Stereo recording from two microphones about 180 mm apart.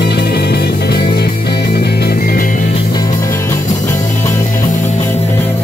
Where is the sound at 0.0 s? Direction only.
65° left (ahead or behind).